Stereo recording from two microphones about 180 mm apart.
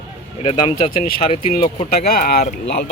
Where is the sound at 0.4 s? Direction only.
25° left (ahead or behind).